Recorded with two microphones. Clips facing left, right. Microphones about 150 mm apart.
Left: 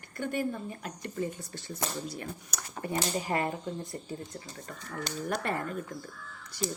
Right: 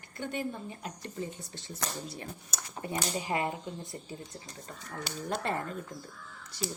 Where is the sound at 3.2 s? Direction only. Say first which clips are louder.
Right 1 dB; 15° right (ahead or behind).